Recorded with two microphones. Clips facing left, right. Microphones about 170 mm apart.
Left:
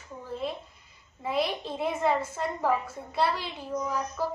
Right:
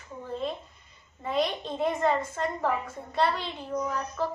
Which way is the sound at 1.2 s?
5° left (ahead or behind).